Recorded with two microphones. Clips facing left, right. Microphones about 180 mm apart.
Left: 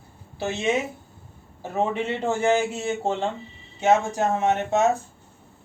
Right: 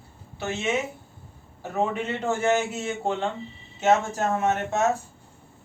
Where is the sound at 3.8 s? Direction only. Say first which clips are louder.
Left 2 dB; 15° left (ahead or behind).